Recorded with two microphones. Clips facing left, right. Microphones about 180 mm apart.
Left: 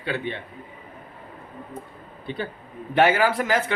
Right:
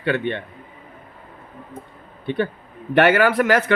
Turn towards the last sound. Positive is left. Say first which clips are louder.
# right 5 dB
turn(degrees=-70)  # may be behind; listen again after turning